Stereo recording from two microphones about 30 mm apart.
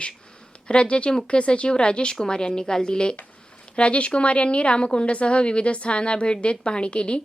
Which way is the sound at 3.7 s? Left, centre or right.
Left.